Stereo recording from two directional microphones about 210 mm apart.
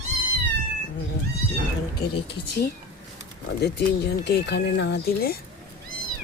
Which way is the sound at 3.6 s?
50° left (ahead or behind).